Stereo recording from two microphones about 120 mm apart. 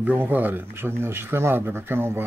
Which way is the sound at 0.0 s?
15° right (ahead or behind).